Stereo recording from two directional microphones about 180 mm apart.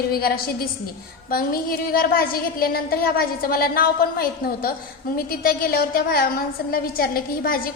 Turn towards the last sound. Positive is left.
turn(degrees=55)  # may be behind; listen again after turning